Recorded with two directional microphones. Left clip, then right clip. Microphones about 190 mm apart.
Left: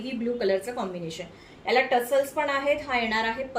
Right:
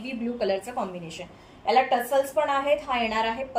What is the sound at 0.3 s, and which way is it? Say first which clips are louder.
A woman's voice: even; 15° left (ahead or behind).